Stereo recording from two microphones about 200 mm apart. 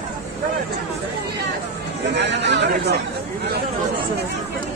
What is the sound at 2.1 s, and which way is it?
Chatter, 60° right (ahead or behind).